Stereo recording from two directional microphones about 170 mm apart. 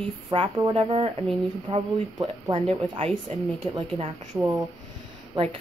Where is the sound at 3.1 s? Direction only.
Centre (ahead or behind).